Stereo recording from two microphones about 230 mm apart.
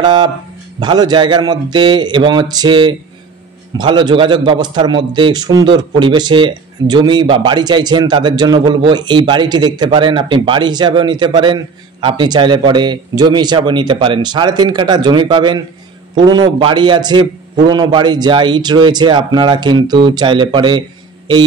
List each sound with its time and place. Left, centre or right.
0.0 s a man's voice: centre